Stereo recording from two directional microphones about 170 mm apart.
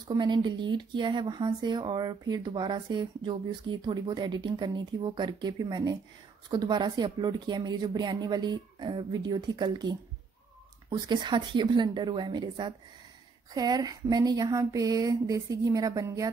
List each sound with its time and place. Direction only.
0.1 s speech: 25° right (ahead or behind)